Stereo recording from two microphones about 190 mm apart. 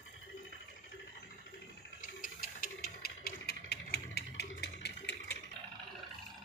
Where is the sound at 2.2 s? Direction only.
50° left (ahead or behind).